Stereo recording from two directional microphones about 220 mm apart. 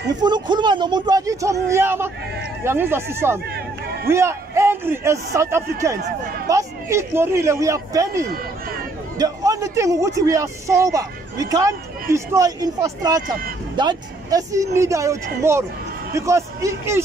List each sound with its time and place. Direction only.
0.1 s speech: 20° right (ahead or behind)
3.5 s a sound: 45° right (ahead or behind)
4.1 s speech: 10° right (ahead or behind)